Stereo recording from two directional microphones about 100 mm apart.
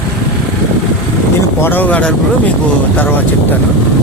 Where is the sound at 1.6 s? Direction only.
20° left (ahead or behind).